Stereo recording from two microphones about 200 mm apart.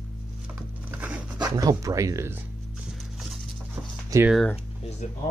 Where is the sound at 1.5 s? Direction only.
20° right (ahead or behind).